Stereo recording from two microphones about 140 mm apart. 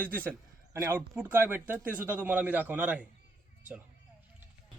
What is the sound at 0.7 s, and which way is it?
A man's voice, 20° right (ahead or behind).